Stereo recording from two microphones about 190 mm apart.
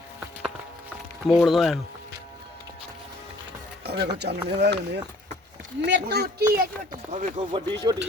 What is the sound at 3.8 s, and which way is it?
Speech, 60° right (ahead or behind).